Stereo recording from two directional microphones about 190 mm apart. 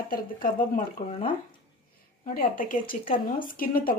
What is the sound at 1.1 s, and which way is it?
Speech, 30° left (ahead or behind).